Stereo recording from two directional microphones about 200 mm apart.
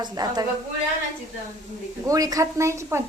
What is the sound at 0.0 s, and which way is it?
Speech, 20° right (ahead or behind).